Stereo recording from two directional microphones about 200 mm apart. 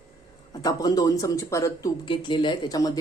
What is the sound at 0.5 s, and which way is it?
Speech, 20° left (ahead or behind).